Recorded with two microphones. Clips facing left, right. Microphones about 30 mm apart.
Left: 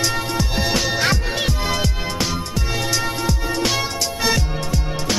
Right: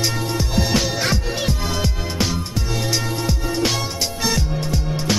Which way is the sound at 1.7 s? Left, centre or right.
Centre.